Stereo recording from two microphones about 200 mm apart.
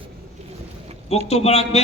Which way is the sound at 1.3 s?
30° left (ahead or behind).